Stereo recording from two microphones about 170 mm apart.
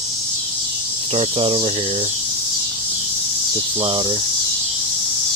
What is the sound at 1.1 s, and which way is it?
Speech, 30° right (ahead or behind).